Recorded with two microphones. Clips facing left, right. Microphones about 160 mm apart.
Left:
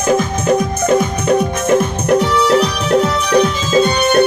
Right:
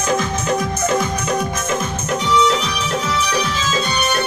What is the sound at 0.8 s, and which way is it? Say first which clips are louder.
Music: left 7 dB; 55° left (ahead or behind).